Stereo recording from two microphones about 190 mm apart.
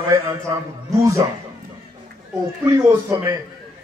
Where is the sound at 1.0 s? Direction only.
15° right (ahead or behind).